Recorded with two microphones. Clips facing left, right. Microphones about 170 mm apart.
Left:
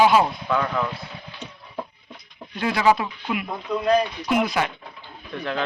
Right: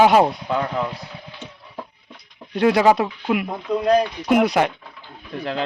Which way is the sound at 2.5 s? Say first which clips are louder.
Right 9 dB; 70° right (ahead or behind).